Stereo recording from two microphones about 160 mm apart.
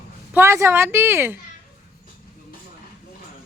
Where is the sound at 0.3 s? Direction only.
15° right (ahead or behind).